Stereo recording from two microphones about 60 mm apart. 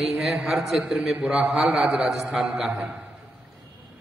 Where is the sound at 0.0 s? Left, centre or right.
Centre.